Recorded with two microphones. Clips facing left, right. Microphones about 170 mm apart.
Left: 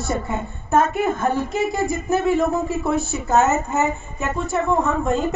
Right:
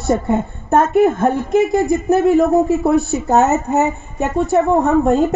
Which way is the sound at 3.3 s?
65° right (ahead or behind).